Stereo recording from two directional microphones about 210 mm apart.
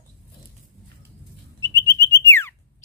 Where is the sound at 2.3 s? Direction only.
10° left (ahead or behind).